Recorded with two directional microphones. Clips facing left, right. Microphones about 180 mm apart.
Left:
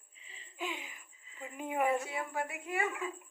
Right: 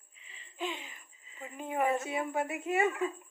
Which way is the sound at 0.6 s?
10° left (ahead or behind).